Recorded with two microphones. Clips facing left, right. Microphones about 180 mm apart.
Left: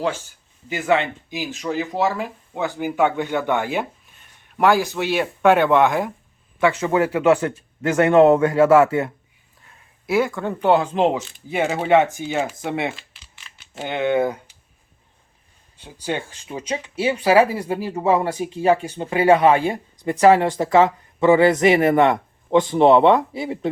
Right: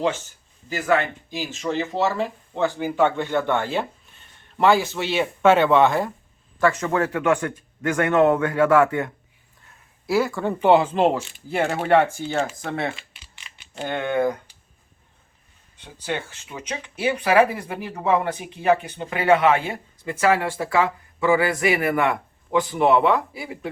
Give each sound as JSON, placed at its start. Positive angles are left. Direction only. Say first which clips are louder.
{"t": 0.7, "sound": "speech", "louder": "left 2 dB", "side_deg": 25}
{"t": 1.6, "sound": "speech", "louder": "left 1 dB", "side_deg": 5}
{"t": 10.1, "sound": "speech", "louder": "left 1 dB", "side_deg": -5}
{"t": 11.9, "sound": "speech", "louder": "left 2 dB", "side_deg": 20}
{"t": 13.0, "sound": "a sound", "louder": "even", "side_deg": 5}
{"t": 13.8, "sound": "speech", "louder": "left 2 dB", "side_deg": 20}
{"t": 16.5, "sound": "speech", "louder": "left 7 dB", "side_deg": 30}
{"t": 20.2, "sound": "speech", "louder": "left 6 dB", "side_deg": 20}